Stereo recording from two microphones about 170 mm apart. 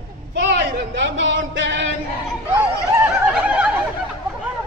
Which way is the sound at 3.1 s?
5° right (ahead or behind).